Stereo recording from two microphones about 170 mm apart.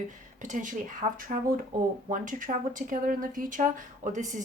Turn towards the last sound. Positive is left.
turn(degrees=-45)  # may be behind; listen again after turning